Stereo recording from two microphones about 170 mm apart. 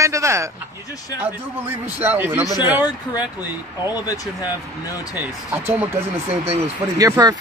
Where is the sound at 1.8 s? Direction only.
10° right (ahead or behind).